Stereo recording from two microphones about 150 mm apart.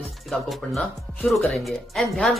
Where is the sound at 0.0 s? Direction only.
Centre (ahead or behind).